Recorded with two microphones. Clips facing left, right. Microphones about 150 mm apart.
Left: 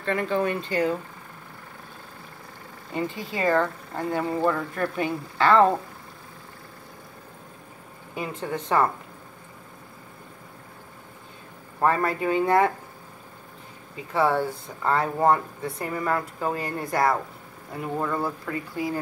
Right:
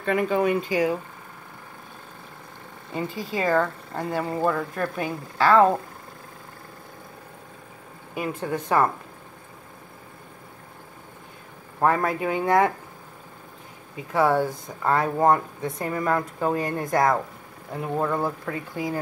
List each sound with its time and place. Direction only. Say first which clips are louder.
0.0 s speech: right 3 dB; 10° right (ahead or behind)
2.9 s speech: even; 10° right (ahead or behind)
8.1 s speech: right 2 dB; 10° right (ahead or behind)
11.8 s speech: right 1 dB; 10° right (ahead or behind)
14.1 s speech: right 2 dB; 15° right (ahead or behind)